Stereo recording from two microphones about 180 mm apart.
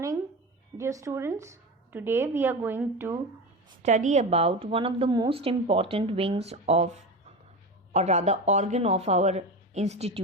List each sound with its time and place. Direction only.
0.8 s a woman's voice: 15° right (ahead or behind)
3.8 s a woman's voice: 40° right (ahead or behind)
7.9 s a woman's voice: 40° right (ahead or behind)